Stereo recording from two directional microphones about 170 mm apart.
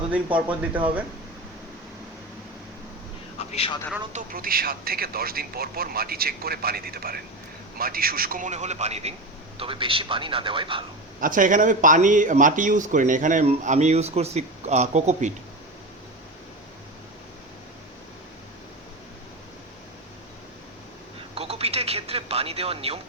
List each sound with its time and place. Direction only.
0.3 s speech: 10° right (ahead or behind)
3.3 s a sound: 35° left (ahead or behind)
4.1 s speech: 55° right (ahead or behind); by 10.8 s 30° right (ahead or behind)
11.2 s speech: 50° right (ahead or behind)
21.3 s radio: 35° right (ahead or behind)